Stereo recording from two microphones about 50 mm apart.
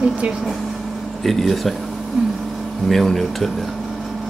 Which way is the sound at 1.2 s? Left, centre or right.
Centre.